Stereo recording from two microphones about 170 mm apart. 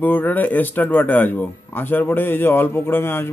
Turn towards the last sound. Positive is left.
turn(degrees=15)  # may be behind; listen again after turning